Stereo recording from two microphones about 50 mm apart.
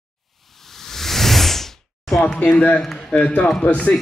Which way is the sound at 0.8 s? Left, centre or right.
Centre.